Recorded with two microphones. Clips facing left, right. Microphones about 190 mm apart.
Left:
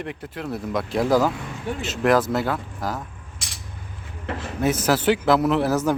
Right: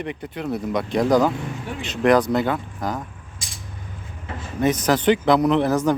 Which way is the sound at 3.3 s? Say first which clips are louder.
Even; 70° left (ahead or behind).